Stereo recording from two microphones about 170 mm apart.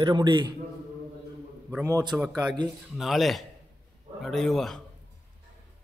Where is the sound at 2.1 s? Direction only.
5° right (ahead or behind).